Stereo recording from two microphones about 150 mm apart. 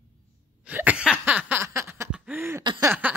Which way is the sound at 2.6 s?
30° right (ahead or behind).